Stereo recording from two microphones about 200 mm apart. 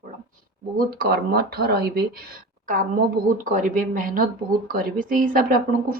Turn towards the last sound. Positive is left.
turn(degrees=-45)  # may be behind; listen again after turning